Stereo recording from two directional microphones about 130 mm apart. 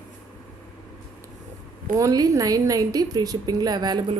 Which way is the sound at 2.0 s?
25° right (ahead or behind).